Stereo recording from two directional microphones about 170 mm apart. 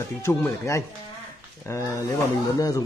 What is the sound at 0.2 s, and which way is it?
Speech, 15° left (ahead or behind).